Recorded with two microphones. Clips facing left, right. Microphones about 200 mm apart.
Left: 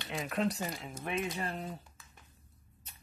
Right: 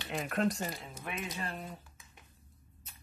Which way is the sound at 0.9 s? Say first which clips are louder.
Left 7 dB; 30° left (ahead or behind).